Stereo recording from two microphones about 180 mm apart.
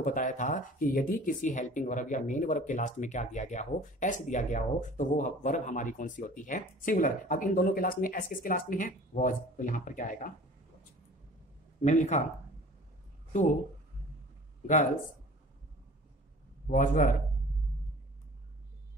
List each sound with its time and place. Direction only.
0.0 s speech: 45° left (ahead or behind)
11.8 s speech: 40° left (ahead or behind)
16.6 s speech: 45° left (ahead or behind)